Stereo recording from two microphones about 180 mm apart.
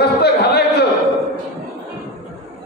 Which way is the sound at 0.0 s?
65° left (ahead or behind).